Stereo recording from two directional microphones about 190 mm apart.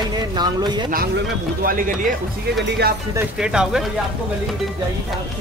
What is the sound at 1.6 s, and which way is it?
Speech, 45° right (ahead or behind).